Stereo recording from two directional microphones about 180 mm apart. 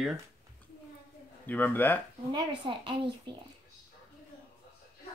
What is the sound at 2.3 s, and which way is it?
Speech, 25° right (ahead or behind).